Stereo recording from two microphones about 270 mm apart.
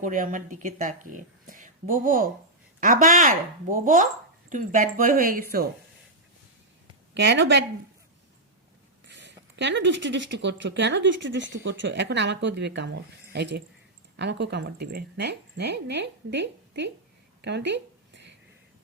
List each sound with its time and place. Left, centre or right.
0.0 s speech: right
7.1 s speech: right
9.0 s speech: right